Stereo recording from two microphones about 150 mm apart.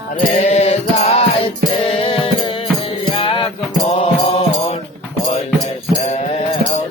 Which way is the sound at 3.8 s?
40° left (ahead or behind).